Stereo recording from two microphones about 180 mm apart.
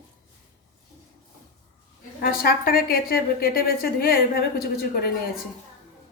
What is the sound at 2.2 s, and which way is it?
A woman's voice, 55° left (ahead or behind).